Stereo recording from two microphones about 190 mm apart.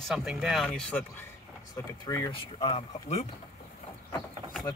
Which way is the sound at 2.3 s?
30° left (ahead or behind).